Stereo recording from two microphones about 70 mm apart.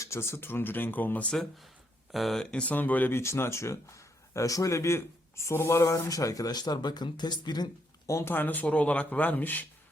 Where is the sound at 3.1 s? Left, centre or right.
Left.